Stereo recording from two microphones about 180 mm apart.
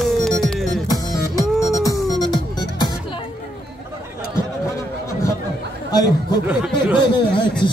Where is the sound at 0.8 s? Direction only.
20° left (ahead or behind).